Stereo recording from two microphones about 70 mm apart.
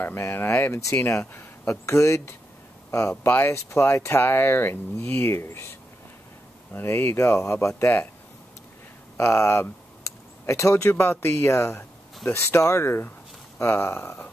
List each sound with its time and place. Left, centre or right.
0.0 s speech: left
1.7 s speech: left
6.7 s speech: left
9.1 s speech: left